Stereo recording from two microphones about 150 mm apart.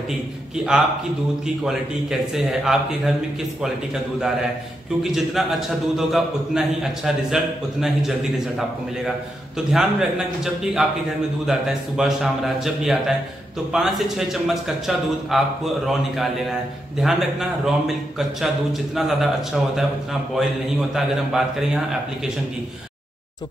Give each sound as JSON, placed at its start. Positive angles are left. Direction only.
{"t": 1.6, "sound": "a man's voice", "side_deg": 0}
{"t": 5.0, "sound": "a man's voice", "side_deg": 0}